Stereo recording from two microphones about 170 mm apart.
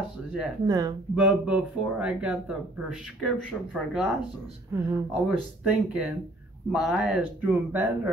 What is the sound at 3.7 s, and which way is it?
Speech, 5° right (ahead or behind).